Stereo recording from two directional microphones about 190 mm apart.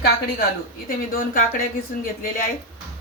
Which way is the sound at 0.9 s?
50° left (ahead or behind).